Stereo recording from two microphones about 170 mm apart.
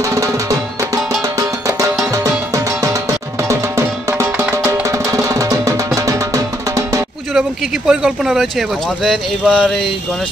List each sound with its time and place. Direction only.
0.1 s music: 15° right (ahead or behind)
2.1 s music: 20° right (ahead or behind)
7.3 s speech: 5° right (ahead or behind)